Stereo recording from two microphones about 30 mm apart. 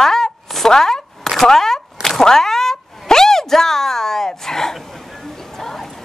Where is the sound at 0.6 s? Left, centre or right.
Centre.